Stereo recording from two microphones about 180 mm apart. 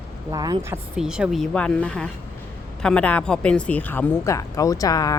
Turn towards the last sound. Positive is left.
turn(degrees=20)  # may be behind; listen again after turning